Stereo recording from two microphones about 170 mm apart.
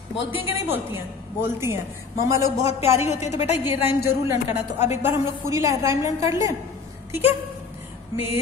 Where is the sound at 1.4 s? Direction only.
15° right (ahead or behind).